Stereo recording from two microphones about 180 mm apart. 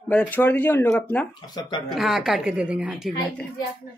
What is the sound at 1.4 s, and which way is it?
Speech, 25° left (ahead or behind).